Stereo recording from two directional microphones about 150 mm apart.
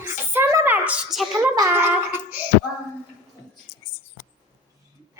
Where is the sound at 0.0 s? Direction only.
15° right (ahead or behind).